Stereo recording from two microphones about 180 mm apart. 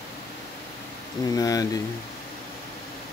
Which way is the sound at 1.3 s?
20° left (ahead or behind).